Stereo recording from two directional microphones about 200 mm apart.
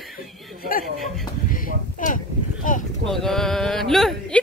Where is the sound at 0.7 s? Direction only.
45° left (ahead or behind).